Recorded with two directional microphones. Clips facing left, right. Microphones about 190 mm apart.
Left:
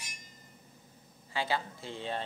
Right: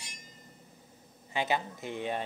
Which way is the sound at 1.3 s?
20° right (ahead or behind).